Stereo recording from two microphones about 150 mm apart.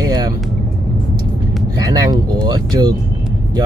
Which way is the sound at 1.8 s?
25° right (ahead or behind).